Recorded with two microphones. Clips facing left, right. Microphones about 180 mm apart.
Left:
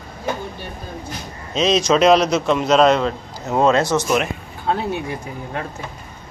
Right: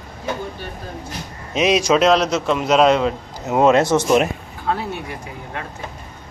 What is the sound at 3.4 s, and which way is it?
Speech, 20° right (ahead or behind).